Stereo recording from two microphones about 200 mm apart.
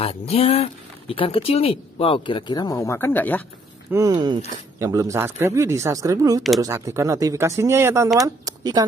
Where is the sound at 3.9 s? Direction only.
15° right (ahead or behind).